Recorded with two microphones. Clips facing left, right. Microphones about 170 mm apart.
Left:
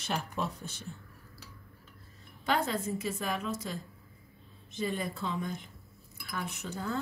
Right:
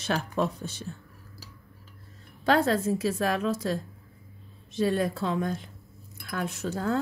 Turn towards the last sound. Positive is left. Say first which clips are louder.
# right 6 dB
turn(degrees=-90)